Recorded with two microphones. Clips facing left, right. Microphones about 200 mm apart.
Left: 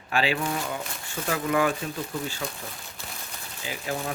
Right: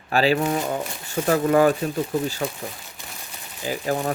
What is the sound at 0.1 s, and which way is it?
Speech, 40° right (ahead or behind).